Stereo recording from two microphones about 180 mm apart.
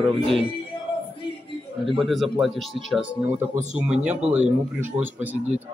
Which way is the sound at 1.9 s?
Centre (ahead or behind).